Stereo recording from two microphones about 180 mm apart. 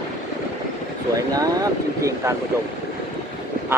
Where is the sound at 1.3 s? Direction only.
20° right (ahead or behind).